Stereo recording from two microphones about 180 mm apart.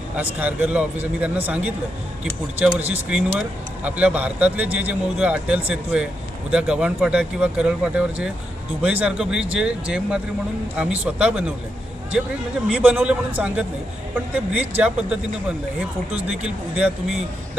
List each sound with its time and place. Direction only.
0.2 s speech: 10° right (ahead or behind)
12.7 s speech: 5° right (ahead or behind)